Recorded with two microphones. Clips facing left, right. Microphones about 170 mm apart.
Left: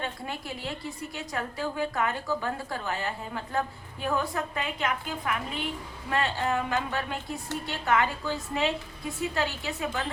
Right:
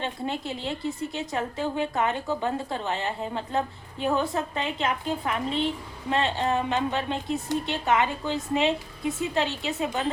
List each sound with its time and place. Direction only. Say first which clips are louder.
0.0 s a woman's voice: right 5 dB; 25° right (ahead or behind)